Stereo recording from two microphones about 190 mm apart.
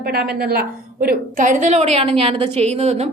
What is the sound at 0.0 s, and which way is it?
A woman's voice, 55° right (ahead or behind).